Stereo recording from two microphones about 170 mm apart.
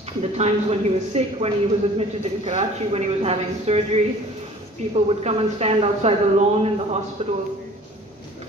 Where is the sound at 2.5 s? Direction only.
35° right (ahead or behind).